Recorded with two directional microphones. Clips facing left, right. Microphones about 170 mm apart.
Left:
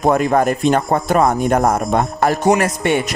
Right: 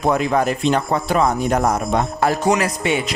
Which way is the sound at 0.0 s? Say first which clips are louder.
Left 3 dB; 50° left (ahead or behind).